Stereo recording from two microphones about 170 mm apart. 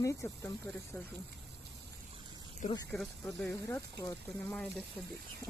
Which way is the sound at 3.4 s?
15° left (ahead or behind).